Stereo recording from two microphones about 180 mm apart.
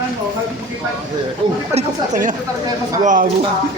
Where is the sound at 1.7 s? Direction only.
45° right (ahead or behind).